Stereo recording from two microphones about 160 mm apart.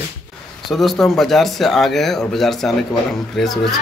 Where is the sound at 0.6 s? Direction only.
Centre (ahead or behind).